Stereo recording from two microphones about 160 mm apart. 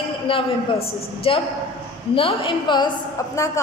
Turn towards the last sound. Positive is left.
turn(degrees=20)  # may be behind; listen again after turning